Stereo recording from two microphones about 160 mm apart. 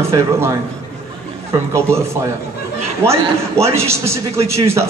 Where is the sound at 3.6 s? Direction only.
15° right (ahead or behind).